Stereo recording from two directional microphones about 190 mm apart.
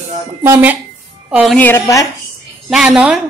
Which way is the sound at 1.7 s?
15° left (ahead or behind).